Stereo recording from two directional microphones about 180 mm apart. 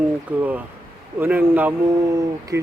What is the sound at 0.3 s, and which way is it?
Speech, 10° right (ahead or behind).